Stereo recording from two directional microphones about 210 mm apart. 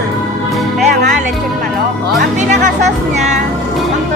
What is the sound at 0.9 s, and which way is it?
Music, 35° right (ahead or behind).